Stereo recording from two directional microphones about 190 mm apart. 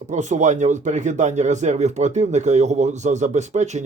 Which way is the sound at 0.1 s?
40° right (ahead or behind).